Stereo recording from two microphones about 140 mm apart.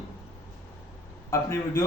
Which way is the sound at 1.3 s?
20° left (ahead or behind).